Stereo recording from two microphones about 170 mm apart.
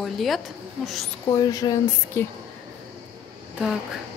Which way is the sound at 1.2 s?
20° left (ahead or behind).